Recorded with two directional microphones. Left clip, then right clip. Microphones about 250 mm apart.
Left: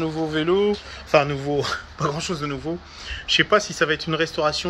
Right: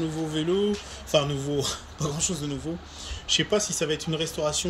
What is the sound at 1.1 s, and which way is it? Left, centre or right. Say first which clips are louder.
Speech: left 6 dB; centre.